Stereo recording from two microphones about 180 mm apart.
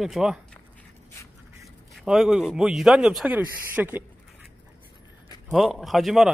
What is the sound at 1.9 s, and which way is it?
Speech, 5° right (ahead or behind).